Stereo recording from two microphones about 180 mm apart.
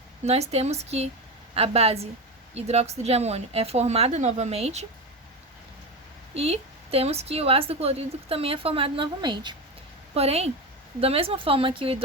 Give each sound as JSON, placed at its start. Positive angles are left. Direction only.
{"t": 0.3, "sound": "a woman's voice", "side_deg": -35}
{"t": 6.3, "sound": "a woman's voice", "side_deg": -35}